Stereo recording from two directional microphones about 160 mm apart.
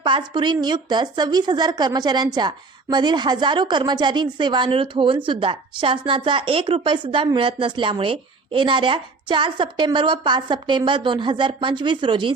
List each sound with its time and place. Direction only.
0.0 s a woman's voice: 30° right (ahead or behind)